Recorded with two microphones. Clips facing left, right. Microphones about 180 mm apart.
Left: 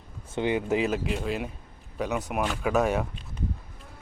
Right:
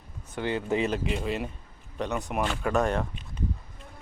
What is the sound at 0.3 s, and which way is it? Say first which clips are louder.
Speech: left 3 dB; 15° left (ahead or behind).